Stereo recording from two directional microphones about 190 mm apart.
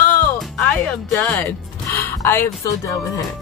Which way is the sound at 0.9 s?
5° left (ahead or behind).